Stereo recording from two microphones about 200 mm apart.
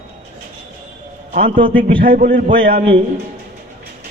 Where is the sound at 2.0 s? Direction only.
45° right (ahead or behind).